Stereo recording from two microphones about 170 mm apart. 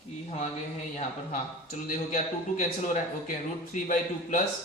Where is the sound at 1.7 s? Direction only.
50° left (ahead or behind).